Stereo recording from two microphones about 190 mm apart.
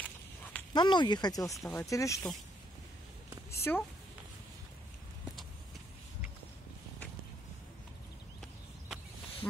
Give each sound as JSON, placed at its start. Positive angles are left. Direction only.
{"t": 0.0, "sound": "walk", "side_deg": 10}
{"t": 0.7, "sound": "speech", "side_deg": 25}
{"t": 3.7, "sound": "speech", "side_deg": 10}
{"t": 8.4, "sound": "a sound", "side_deg": 0}